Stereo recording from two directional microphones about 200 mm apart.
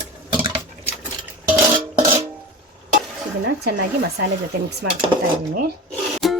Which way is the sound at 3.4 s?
55° right (ahead or behind).